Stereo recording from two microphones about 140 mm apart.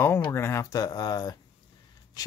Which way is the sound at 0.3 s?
20° left (ahead or behind).